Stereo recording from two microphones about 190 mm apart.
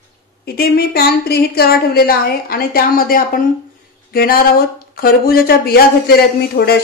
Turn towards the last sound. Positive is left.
turn(degrees=55)  # may be behind; listen again after turning